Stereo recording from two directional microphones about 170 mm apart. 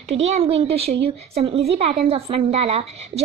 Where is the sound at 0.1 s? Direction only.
40° right (ahead or behind).